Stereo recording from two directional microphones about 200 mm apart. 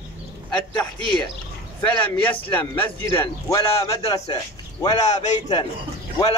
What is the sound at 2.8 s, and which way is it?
Speech, 10° left (ahead or behind).